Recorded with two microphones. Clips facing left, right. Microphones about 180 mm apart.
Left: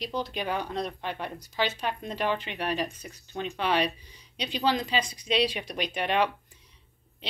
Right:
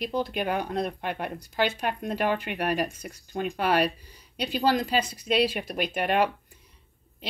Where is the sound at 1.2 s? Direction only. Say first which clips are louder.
Right 3 dB; 10° right (ahead or behind).